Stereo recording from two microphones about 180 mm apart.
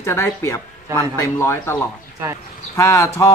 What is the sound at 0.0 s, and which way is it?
Speech, 15° left (ahead or behind).